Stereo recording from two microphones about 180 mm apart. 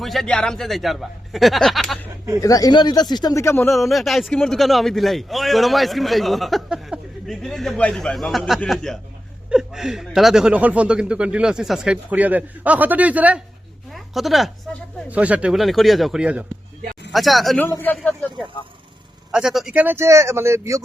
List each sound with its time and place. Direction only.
0.0 s a man's voice: centre (ahead or behind)
2.4 s speech: 20° left (ahead or behind)
3.7 s a man's voice: centre (ahead or behind)
17.7 s a man's voice: 10° left (ahead or behind); by 20.8 s 15° right (ahead or behind)